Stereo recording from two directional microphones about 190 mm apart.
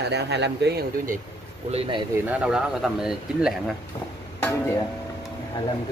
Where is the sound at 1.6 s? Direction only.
30° right (ahead or behind).